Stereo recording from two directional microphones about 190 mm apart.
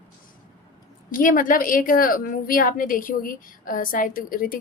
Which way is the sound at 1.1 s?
45° left (ahead or behind).